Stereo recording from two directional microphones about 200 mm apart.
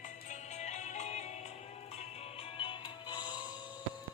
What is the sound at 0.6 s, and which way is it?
Music, 35° left (ahead or behind).